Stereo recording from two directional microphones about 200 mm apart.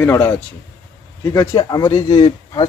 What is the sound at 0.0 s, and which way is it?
Speech, 15° left (ahead or behind).